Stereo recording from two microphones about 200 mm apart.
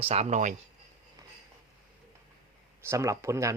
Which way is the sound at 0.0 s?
30° right (ahead or behind).